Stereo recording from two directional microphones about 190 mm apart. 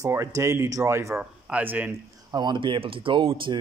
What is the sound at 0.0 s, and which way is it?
Speech, 15° right (ahead or behind).